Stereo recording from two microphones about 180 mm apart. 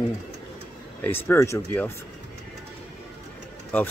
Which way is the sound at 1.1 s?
15° left (ahead or behind).